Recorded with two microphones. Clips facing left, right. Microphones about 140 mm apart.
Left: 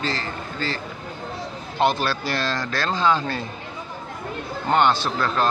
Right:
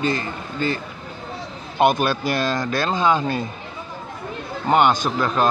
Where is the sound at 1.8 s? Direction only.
15° right (ahead or behind).